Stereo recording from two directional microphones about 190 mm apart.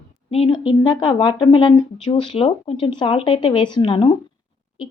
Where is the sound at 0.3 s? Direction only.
25° left (ahead or behind).